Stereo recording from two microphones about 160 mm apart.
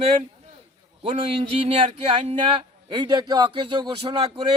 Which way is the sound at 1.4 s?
35° right (ahead or behind).